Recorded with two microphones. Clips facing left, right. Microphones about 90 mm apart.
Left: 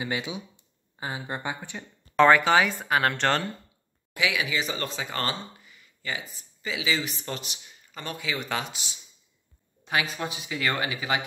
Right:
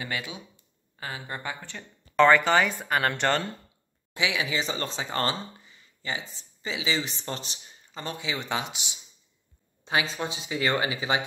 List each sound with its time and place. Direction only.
0.0 s speech: 20° left (ahead or behind)
2.1 s speech: centre (ahead or behind)
4.1 s speech: 25° right (ahead or behind)